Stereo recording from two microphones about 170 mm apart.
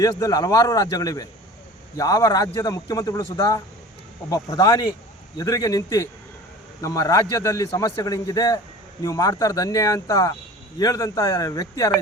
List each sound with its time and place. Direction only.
0.0 s a man's voice: 20° left (ahead or behind)